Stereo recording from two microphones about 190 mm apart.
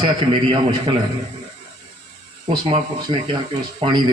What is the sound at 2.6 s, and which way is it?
A man's voice, 25° right (ahead or behind).